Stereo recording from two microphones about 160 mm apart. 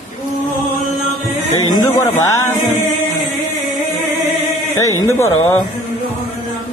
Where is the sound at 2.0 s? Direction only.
20° left (ahead or behind).